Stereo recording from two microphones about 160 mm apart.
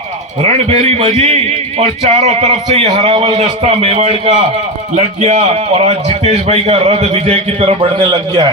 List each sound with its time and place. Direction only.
0.4 s a man's voice: 40° right (ahead or behind)